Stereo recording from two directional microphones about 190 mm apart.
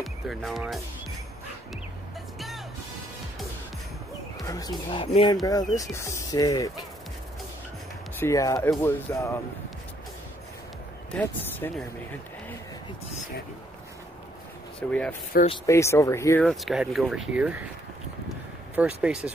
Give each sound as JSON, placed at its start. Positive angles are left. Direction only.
{"t": 0.0, "sound": "speech", "side_deg": 0}
{"t": 2.3, "sound": "music", "side_deg": 0}
{"t": 4.4, "sound": "speech", "side_deg": 20}
{"t": 8.2, "sound": "speech", "side_deg": 15}
{"t": 11.1, "sound": "speech", "side_deg": 10}
{"t": 14.8, "sound": "speech", "side_deg": 5}
{"t": 16.4, "sound": "speech", "side_deg": 0}
{"t": 18.8, "sound": "speech", "side_deg": -5}